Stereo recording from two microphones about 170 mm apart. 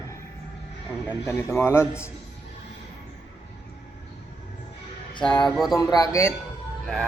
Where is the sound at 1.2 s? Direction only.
15° left (ahead or behind).